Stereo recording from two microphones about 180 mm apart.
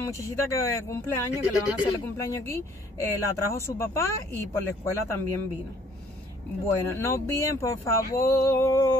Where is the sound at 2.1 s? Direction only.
15° left (ahead or behind).